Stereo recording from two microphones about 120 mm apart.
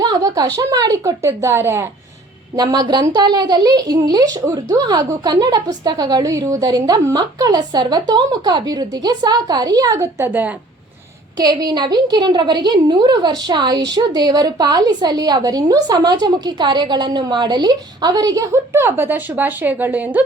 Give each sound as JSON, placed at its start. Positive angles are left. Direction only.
{"t": 0.0, "sound": "a woman's voice", "side_deg": -35}
{"t": 2.6, "sound": "a woman's voice", "side_deg": -35}
{"t": 11.3, "sound": "a woman's voice", "side_deg": -35}